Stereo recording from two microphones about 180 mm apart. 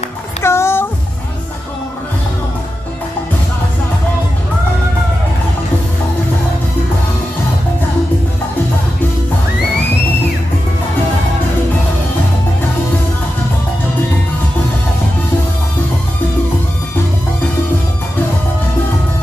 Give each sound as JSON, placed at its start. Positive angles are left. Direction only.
{"t": 0.4, "sound": "music", "side_deg": 15}